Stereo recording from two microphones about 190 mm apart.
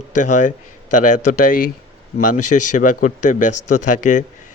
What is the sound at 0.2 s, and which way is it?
Speech, 40° left (ahead or behind).